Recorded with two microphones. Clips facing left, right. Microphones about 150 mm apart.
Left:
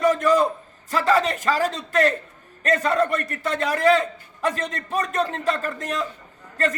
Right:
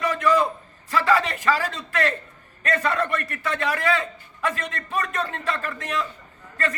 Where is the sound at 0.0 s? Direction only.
45° left (ahead or behind).